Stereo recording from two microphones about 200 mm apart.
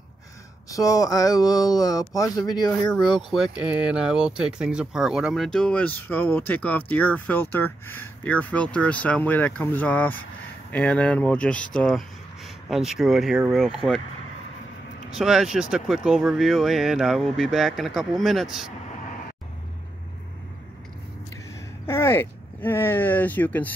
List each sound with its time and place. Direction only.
0.7 s speech: 15° left (ahead or behind)
3.5 s speech: 5° right (ahead or behind)
15.1 s speech: centre (ahead or behind)
21.8 s speech: 10° left (ahead or behind)